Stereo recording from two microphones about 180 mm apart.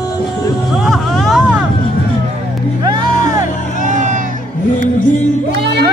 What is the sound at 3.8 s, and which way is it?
Music, 45° right (ahead or behind).